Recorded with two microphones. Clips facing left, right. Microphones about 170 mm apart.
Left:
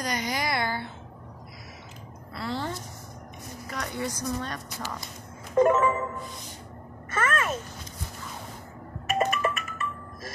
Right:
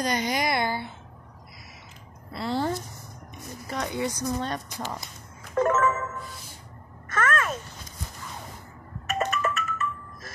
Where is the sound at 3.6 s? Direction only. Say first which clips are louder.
Right 3 dB; 20° right (ahead or behind).